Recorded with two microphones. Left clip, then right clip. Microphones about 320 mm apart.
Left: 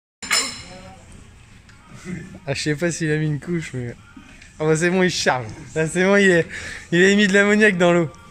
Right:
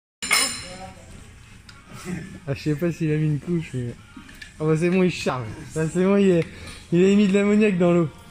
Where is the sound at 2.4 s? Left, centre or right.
Centre.